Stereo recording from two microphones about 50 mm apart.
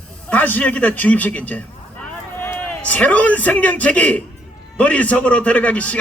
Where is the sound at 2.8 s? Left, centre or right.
Left.